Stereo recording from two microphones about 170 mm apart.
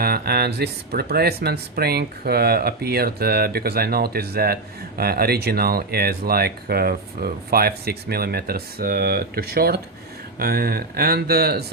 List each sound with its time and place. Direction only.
0.0 s speech: 65° right (ahead or behind)